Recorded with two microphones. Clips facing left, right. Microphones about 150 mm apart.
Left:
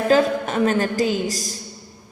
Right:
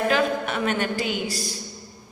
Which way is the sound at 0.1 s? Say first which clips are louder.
Left 5 dB; 40° left (ahead or behind).